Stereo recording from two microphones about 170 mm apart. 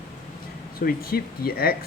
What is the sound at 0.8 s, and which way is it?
Speech, 60° left (ahead or behind).